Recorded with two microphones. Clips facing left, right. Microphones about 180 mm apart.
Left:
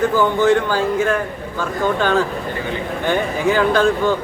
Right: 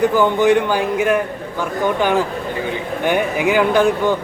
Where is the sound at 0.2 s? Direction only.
15° right (ahead or behind).